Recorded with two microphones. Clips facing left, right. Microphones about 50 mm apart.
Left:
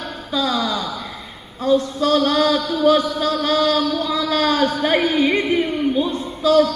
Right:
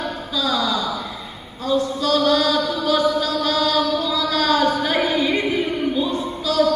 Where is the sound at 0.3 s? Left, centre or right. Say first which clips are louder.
Left 1 dB; left.